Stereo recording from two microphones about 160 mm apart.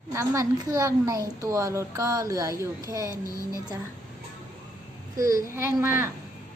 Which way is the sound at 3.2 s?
20° left (ahead or behind).